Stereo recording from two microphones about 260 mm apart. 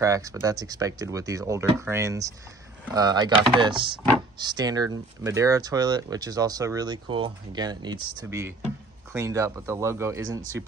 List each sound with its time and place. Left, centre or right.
0.0 s speech: centre